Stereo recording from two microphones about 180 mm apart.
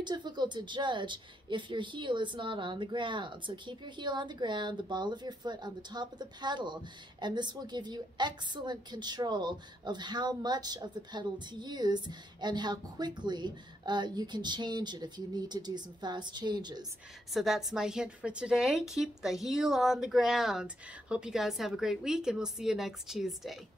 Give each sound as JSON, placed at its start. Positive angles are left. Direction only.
{"t": 0.0, "sound": "speech", "side_deg": -25}
{"t": 17.3, "sound": "a woman's voice", "side_deg": 0}